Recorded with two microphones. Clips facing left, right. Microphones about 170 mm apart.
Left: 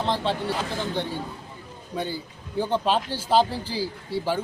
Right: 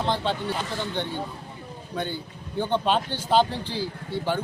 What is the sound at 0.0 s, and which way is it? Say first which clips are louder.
Speech: even; centre (ahead or behind).